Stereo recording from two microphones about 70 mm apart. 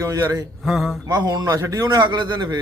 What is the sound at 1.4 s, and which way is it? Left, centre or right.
Speech, right.